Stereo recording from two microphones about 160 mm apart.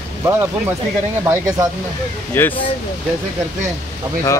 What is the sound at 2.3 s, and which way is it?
Speech, 15° left (ahead or behind).